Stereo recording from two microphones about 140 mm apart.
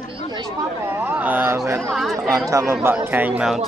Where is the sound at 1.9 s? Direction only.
Centre (ahead or behind).